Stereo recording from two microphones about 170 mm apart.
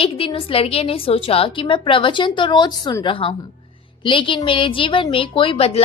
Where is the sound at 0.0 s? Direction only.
30° left (ahead or behind).